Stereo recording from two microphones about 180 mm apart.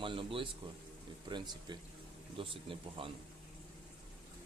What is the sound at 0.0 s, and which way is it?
Speech, 30° right (ahead or behind).